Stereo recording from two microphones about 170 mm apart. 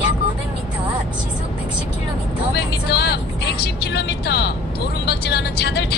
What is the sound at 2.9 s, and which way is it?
Speech, 75° left (ahead or behind).